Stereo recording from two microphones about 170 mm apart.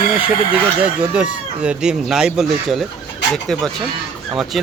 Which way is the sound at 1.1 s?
5° right (ahead or behind).